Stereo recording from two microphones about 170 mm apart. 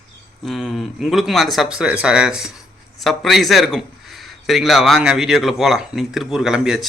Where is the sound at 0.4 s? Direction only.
Centre (ahead or behind).